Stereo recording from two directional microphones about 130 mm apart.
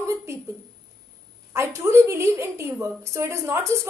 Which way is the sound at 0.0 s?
20° right (ahead or behind).